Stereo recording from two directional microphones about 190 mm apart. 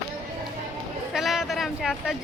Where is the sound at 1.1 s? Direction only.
Centre (ahead or behind).